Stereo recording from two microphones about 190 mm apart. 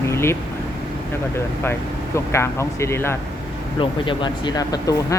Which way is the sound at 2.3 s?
15° left (ahead or behind).